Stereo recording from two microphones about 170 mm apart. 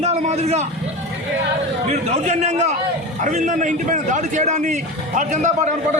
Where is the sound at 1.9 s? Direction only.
45° right (ahead or behind).